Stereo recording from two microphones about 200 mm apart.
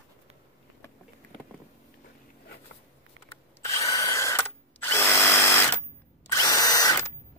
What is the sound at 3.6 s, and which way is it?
Drill, 15° left (ahead or behind).